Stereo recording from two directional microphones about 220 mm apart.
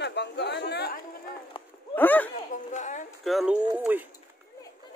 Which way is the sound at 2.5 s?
35° left (ahead or behind).